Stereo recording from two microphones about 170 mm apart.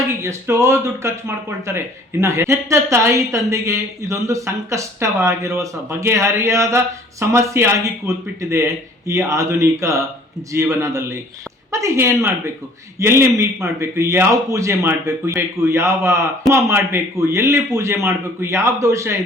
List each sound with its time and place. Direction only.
0.1 s speech: 15° right (ahead or behind)